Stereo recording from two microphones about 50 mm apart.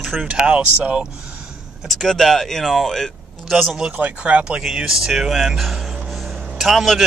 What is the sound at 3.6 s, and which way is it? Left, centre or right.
Speech, centre.